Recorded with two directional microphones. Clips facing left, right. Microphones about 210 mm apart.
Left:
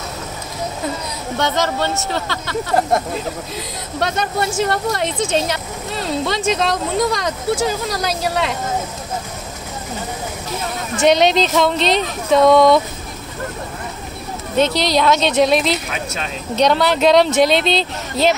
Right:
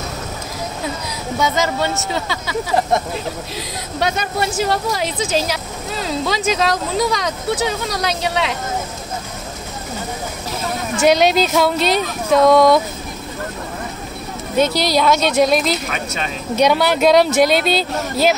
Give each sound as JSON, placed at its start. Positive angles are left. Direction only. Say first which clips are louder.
{"t": 1.4, "sound": "speech", "louder": "even", "side_deg": -5}
{"t": 3.5, "sound": "speech", "louder": "even", "side_deg": -5}
{"t": 11.0, "sound": "speech", "louder": "even", "side_deg": -5}
{"t": 14.8, "sound": "speech", "louder": "even", "side_deg": -5}